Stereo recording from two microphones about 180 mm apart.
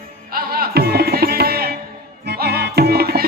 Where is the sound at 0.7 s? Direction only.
60° right (ahead or behind).